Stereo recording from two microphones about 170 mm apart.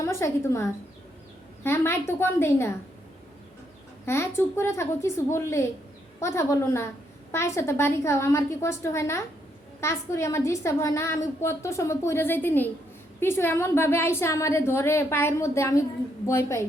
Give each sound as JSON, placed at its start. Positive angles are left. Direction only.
{"t": 0.0, "sound": "a woman's voice", "side_deg": 15}
{"t": 4.0, "sound": "a woman's voice", "side_deg": 15}